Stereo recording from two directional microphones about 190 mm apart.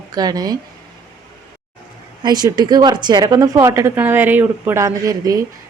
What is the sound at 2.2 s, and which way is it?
Speech, 20° right (ahead or behind).